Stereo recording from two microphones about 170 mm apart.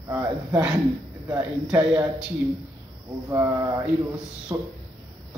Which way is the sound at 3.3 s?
20° right (ahead or behind).